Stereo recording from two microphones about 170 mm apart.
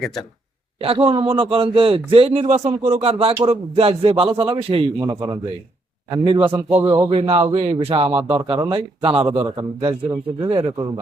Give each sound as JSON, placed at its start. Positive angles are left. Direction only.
{"t": 0.8, "sound": "a man's voice", "side_deg": -35}
{"t": 7.2, "sound": "a man's voice", "side_deg": -35}